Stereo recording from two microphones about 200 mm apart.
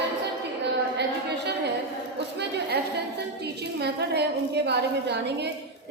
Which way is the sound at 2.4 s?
55° right (ahead or behind).